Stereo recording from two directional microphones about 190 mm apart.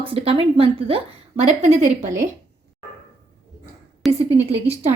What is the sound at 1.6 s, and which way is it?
Speech, 40° right (ahead or behind).